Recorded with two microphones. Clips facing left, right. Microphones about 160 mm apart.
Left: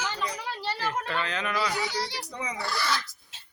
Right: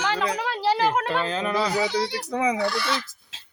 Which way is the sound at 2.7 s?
Centre (ahead or behind).